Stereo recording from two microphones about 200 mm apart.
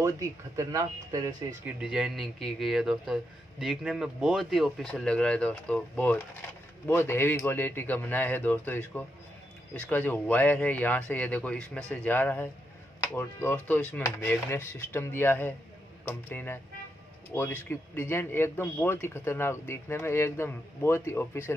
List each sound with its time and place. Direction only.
0.6 s speech: 20° right (ahead or behind)
1.8 s speech: 5° right (ahead or behind); by 21.5 s 15° left (ahead or behind)